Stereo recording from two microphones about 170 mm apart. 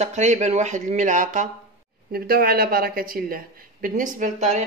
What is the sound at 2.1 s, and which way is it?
Speech, 60° right (ahead or behind).